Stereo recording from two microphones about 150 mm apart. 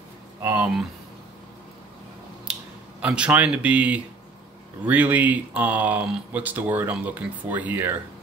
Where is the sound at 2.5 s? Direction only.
10° right (ahead or behind).